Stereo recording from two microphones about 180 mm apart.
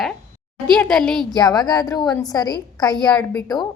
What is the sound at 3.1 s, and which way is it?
Speech, 5° left (ahead or behind).